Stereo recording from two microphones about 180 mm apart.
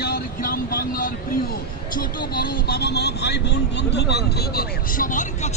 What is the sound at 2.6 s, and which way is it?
Speech, 60° left (ahead or behind).